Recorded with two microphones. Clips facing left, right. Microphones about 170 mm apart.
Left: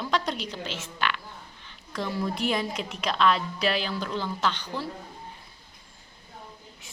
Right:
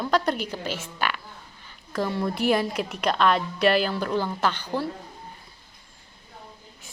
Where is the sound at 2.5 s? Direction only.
60° right (ahead or behind).